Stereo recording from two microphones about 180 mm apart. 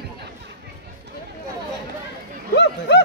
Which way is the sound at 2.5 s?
75° left (ahead or behind).